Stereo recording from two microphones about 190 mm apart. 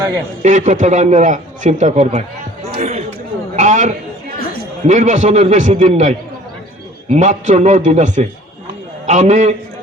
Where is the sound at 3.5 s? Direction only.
40° right (ahead or behind).